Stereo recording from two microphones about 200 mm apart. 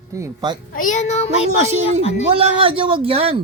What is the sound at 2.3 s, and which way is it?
Speech, 25° right (ahead or behind).